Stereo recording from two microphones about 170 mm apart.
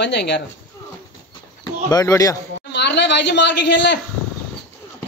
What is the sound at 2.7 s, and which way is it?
A man's voice, 90° left.